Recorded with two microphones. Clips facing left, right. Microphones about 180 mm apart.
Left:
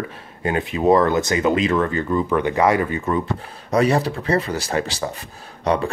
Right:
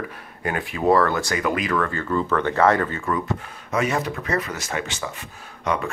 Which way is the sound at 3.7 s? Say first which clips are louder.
Left 5 dB; 35° left (ahead or behind).